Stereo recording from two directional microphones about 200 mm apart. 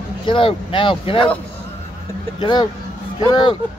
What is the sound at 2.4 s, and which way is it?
Speech, 25° left (ahead or behind).